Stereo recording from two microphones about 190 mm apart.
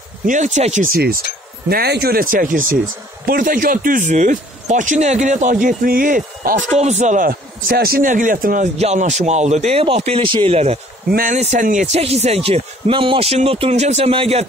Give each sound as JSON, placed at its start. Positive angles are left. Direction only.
{"t": 0.3, "sound": "speech", "side_deg": -40}
{"t": 0.9, "sound": "speech", "side_deg": -55}
{"t": 11.1, "sound": "speech", "side_deg": -50}